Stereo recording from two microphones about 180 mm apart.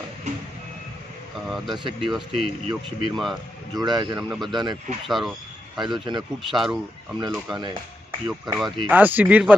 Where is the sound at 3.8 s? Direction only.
25° right (ahead or behind).